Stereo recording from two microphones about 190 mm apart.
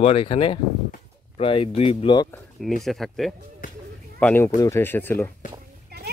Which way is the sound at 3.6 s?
45° left (ahead or behind).